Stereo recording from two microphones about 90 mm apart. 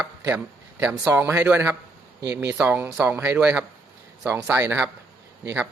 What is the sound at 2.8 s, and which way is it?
Speech, 25° right (ahead or behind).